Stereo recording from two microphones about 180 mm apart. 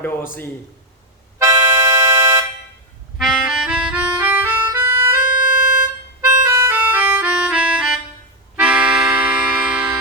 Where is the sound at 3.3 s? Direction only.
5° right (ahead or behind).